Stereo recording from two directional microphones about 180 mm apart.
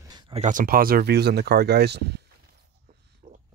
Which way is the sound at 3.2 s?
35° right (ahead or behind).